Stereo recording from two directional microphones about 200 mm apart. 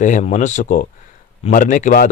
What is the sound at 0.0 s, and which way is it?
Speech, 40° left (ahead or behind).